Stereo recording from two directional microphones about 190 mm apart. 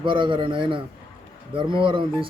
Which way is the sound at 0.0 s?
25° right (ahead or behind).